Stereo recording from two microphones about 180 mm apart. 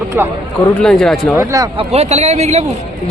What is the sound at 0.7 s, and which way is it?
Speech, 5° left (ahead or behind).